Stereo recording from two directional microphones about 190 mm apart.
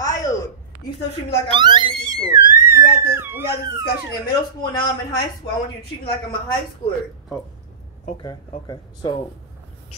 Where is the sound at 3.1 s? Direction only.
10° right (ahead or behind).